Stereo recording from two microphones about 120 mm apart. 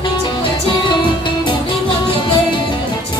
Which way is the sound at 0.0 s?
40° left (ahead or behind).